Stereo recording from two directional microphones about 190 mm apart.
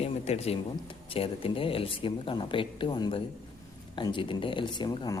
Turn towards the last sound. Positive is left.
turn(degrees=25)  # may be behind; listen again after turning